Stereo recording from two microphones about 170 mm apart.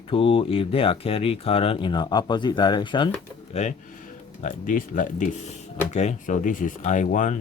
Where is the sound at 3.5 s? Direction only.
40° left (ahead or behind).